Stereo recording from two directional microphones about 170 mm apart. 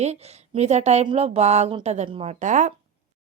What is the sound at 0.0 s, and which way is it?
Speech, 40° right (ahead or behind).